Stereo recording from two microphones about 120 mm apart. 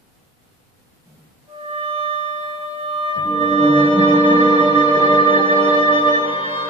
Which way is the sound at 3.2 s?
40° left (ahead or behind).